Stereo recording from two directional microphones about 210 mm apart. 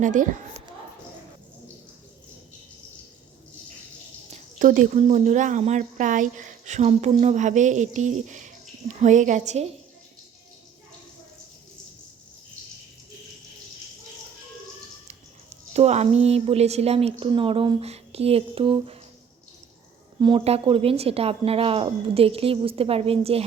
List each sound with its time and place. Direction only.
0.0 s a woman's voice: 40° right (ahead or behind)
4.3 s a woman's voice: 40° right (ahead or behind)
15.7 s speech: 30° right (ahead or behind)
20.1 s speech: 20° right (ahead or behind)